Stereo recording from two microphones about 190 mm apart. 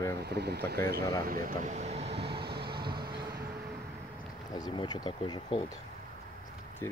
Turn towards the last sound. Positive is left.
turn(degrees=25)  # may be behind; listen again after turning